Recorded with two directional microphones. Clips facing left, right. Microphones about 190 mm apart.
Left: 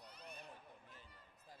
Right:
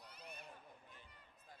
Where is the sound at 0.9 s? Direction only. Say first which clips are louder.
Left 1 dB; 35° left (ahead or behind).